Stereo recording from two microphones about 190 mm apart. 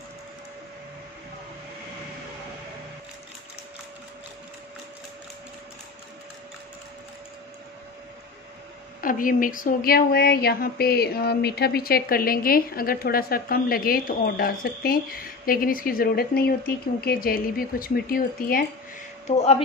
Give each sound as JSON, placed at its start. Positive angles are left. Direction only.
{"t": 9.0, "sound": "speech", "side_deg": 45}
{"t": 19.2, "sound": "speech", "side_deg": 35}